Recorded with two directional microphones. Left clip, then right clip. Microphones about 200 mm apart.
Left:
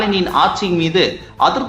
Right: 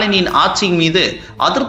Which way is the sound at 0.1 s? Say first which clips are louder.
Right 2 dB; 10° right (ahead or behind).